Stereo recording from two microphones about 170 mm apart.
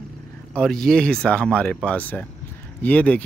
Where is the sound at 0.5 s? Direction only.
5° left (ahead or behind).